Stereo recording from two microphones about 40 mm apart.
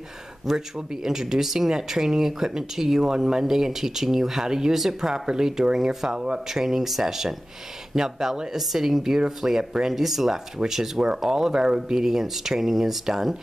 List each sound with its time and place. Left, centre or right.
0.5 s speech: centre
5.1 s speech: centre